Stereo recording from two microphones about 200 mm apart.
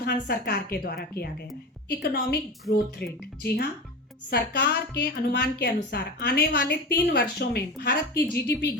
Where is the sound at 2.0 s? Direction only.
50° left (ahead or behind).